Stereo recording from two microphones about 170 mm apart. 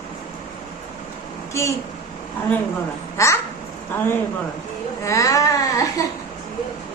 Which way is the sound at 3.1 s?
15° left (ahead or behind).